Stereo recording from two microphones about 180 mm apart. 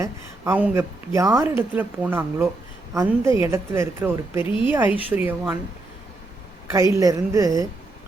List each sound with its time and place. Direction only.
0.0 s a woman's voice: 10° right (ahead or behind)
6.9 s a woman's voice: 20° right (ahead or behind)